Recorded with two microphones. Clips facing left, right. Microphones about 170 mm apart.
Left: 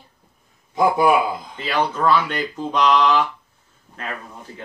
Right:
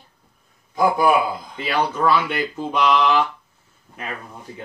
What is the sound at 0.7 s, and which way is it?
Speech, 25° left (ahead or behind).